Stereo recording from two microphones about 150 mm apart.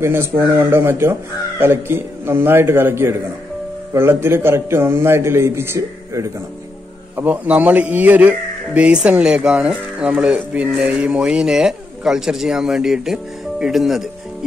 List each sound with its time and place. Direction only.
0.0 s a man's voice: 15° right (ahead or behind)